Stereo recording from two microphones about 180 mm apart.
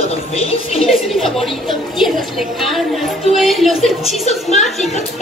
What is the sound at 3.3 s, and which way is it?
Speech, centre (ahead or behind).